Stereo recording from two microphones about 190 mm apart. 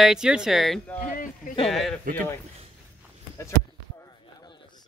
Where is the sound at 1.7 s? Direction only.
Centre (ahead or behind).